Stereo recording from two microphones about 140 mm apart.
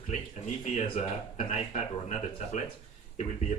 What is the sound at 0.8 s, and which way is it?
Speech, 55° left (ahead or behind).